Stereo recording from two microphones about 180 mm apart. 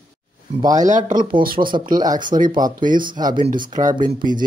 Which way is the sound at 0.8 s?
45° right (ahead or behind).